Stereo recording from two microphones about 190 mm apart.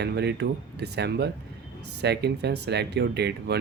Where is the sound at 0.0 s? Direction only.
60° right (ahead or behind).